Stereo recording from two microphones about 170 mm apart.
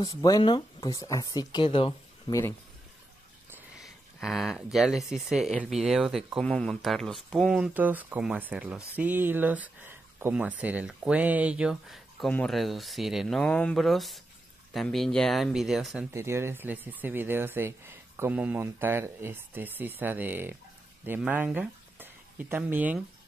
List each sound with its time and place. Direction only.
0.0 s speech: 20° left (ahead or behind)
3.8 s speech: centre (ahead or behind)
16.1 s speech: 15° right (ahead or behind)